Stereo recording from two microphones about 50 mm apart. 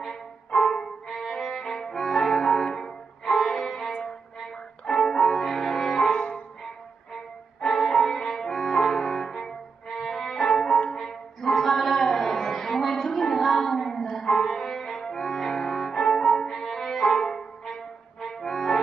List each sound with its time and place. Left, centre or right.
0.6 s music: centre
6.1 s music: left
7.6 s music: centre